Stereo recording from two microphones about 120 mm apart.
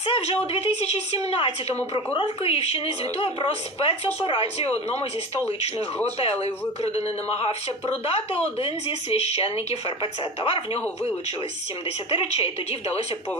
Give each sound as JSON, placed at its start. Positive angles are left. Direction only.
{"t": 0.0, "sound": "a woman's voice", "side_deg": 60}
{"t": 6.4, "sound": "a woman's voice", "side_deg": 60}
{"t": 8.0, "sound": "a woman's voice", "side_deg": 55}
{"t": 12.1, "sound": "speech", "side_deg": 50}